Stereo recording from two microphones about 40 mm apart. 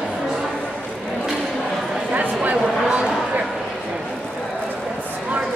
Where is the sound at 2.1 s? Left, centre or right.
Right.